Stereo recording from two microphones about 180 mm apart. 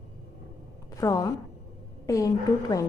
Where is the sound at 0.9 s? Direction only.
20° left (ahead or behind).